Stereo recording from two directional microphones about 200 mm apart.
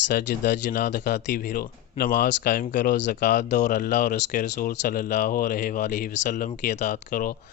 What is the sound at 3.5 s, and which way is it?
Speech, 40° left (ahead or behind).